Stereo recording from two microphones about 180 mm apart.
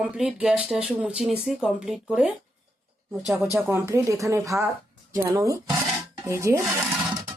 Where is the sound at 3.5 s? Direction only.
15° right (ahead or behind).